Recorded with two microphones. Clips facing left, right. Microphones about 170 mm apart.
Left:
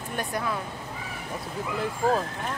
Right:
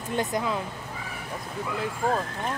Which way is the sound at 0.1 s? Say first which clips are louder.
Right 3 dB; 20° right (ahead or behind).